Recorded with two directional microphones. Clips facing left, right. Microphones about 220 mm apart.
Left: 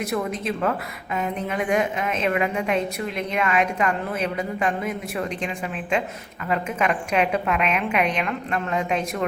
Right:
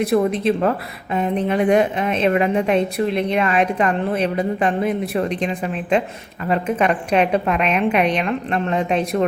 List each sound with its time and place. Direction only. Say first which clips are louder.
0.0 s a woman's voice: right 9 dB; 35° right (ahead or behind)